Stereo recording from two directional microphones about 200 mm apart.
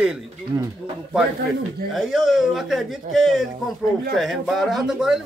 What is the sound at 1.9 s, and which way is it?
Speech, centre (ahead or behind).